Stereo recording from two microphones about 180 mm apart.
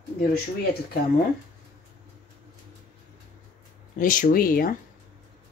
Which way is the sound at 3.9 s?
50° left (ahead or behind).